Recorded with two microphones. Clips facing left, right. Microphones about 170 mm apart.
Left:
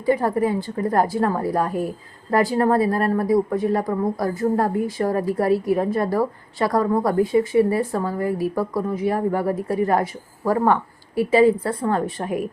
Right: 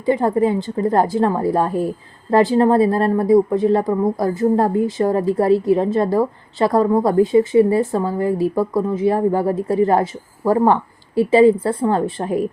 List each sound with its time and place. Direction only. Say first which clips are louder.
0.0 s speech: right 3 dB; 25° right (ahead or behind)